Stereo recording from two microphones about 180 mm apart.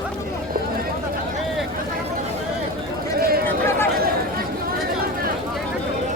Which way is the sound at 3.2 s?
55° right (ahead or behind).